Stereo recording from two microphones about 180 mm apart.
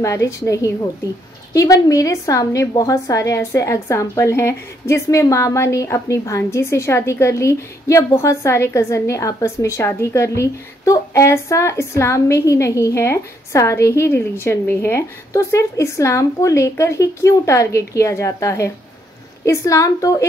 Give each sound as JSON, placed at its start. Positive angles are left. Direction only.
{"t": 0.0, "sound": "a woman's voice", "side_deg": 15}